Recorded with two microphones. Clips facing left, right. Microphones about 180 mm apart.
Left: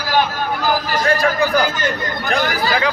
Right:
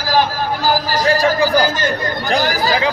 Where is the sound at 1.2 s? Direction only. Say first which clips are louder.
Right 2 dB; 35° right (ahead or behind).